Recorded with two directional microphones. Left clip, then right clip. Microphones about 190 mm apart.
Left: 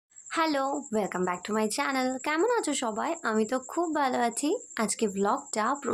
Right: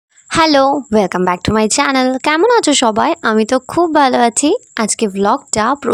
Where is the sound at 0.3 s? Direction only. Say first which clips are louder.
Right 17 dB; 55° right (ahead or behind).